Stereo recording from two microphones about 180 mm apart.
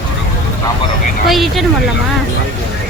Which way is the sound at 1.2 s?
Centre (ahead or behind).